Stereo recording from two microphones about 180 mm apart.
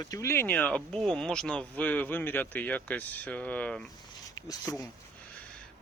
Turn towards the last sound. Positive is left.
turn(degrees=20)  # may be behind; listen again after turning